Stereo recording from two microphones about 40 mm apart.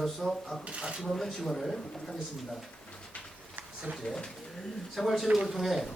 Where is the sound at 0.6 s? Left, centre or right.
Right.